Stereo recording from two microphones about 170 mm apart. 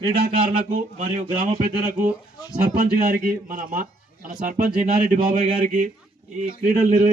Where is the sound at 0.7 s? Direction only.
45° right (ahead or behind).